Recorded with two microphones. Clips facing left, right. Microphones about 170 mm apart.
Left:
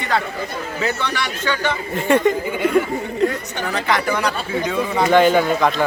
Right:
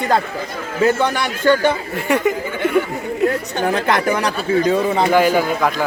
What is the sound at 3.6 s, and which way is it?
Speech, 50° right (ahead or behind).